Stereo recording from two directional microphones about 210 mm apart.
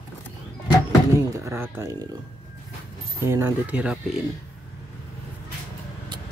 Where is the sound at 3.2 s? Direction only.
10° right (ahead or behind).